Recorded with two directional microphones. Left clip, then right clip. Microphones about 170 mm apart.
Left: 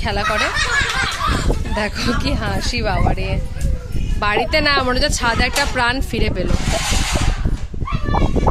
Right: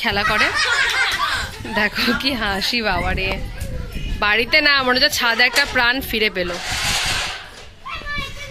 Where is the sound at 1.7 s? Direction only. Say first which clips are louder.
Right 4 dB; 10° left (ahead or behind).